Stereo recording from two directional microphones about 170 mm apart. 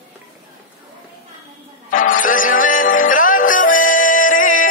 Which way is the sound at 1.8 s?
50° left (ahead or behind).